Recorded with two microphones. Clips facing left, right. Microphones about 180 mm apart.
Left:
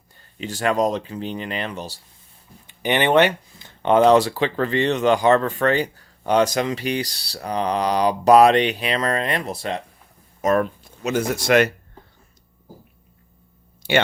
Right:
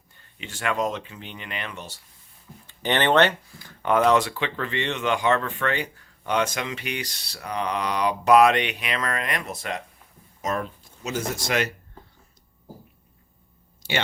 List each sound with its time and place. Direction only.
0.3 s speech: 35° left (ahead or behind)
2.6 s speech: 15° left (ahead or behind)
3.6 s speech: 25° left (ahead or behind)
10.4 s speech: 60° left (ahead or behind)
13.8 s speech: 55° left (ahead or behind)